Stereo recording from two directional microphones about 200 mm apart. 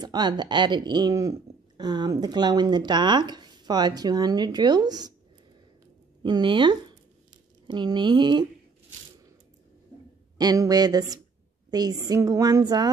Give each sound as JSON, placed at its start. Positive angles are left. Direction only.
{"t": 0.0, "sound": "speech", "side_deg": -20}
{"t": 6.2, "sound": "speech", "side_deg": -25}
{"t": 10.3, "sound": "speech", "side_deg": -20}